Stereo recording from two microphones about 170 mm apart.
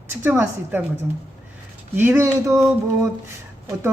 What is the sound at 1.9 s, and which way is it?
Speech, 15° right (ahead or behind).